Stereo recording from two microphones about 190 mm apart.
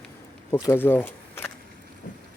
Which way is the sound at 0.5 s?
10° left (ahead or behind).